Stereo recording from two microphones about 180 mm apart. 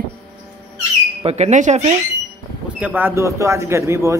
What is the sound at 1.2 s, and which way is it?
Speech, 40° right (ahead or behind).